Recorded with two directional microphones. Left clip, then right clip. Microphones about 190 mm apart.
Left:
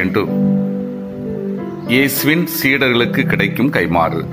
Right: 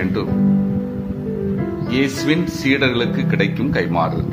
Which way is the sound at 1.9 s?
25° left (ahead or behind).